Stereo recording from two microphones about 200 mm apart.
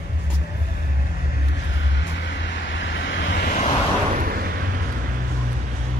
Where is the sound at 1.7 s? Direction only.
65° left (ahead or behind); by 3.7 s 45° left (ahead or behind).